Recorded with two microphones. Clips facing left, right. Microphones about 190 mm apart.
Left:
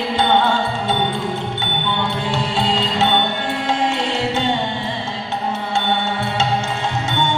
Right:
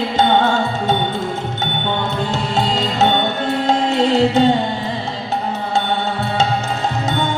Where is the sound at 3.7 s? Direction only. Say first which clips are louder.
Right 5 dB; 40° right (ahead or behind).